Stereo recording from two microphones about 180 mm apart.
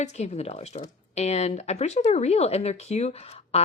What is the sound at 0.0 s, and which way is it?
Speech, 35° left (ahead or behind).